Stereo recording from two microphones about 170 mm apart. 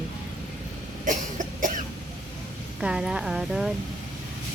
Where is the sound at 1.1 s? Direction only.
50° right (ahead or behind).